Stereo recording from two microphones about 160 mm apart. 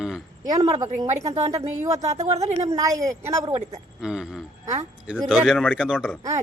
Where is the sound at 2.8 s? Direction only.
20° right (ahead or behind).